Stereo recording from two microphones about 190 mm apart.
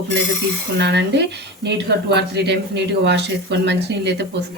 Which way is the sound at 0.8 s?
65° right (ahead or behind).